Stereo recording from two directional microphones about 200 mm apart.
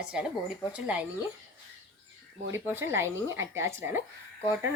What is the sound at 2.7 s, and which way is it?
A woman's voice, 10° right (ahead or behind).